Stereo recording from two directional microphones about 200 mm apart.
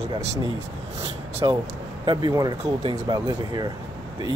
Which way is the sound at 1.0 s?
30° right (ahead or behind).